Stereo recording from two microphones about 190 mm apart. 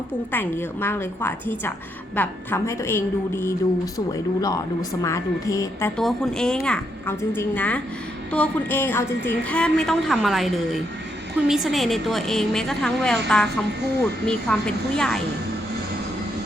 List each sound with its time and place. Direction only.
0.3 s speech: 10° left (ahead or behind)
6.0 s a woman's voice: centre (ahead or behind)